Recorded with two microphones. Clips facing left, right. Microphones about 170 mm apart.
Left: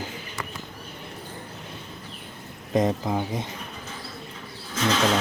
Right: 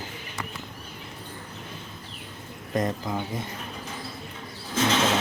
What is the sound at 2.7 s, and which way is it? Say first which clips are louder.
Speech: left 4 dB; 20° left (ahead or behind).